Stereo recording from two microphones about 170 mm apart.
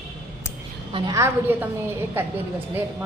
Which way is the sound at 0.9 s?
25° right (ahead or behind).